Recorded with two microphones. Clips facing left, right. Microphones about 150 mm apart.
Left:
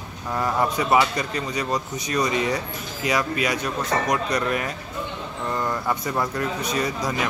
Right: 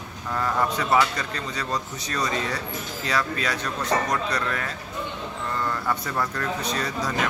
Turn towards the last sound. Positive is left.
turn(degrees=10)  # may be behind; listen again after turning